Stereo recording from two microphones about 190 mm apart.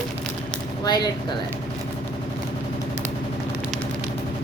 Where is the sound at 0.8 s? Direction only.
20° left (ahead or behind).